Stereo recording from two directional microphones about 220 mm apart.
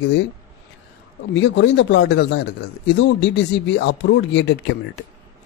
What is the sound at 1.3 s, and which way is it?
Speech, 55° left (ahead or behind).